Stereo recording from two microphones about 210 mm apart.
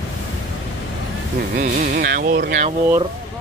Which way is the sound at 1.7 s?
45° right (ahead or behind).